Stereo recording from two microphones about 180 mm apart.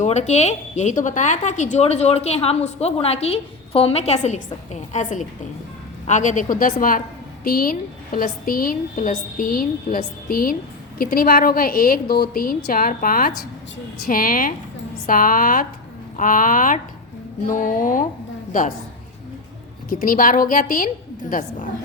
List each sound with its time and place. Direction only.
0.0 s a woman's voice: 40° left (ahead or behind)
19.9 s a woman's voice: 50° left (ahead or behind)